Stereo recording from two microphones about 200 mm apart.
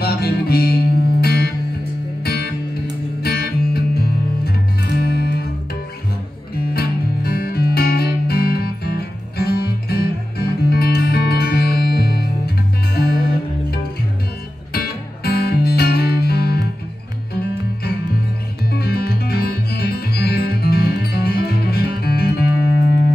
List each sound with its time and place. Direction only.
0.0 s music: 50° left (ahead or behind)
6.5 s music: 50° left (ahead or behind)
18.7 s music: 50° left (ahead or behind)